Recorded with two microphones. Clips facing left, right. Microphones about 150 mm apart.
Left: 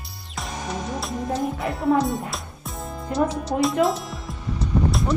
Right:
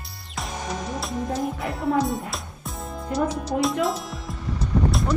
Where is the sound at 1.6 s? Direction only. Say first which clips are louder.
Left 3 dB; centre (ahead or behind).